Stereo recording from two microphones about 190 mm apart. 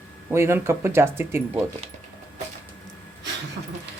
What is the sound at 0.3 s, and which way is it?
Speech, 15° right (ahead or behind).